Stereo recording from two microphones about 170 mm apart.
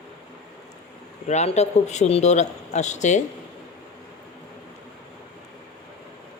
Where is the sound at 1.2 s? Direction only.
40° left (ahead or behind).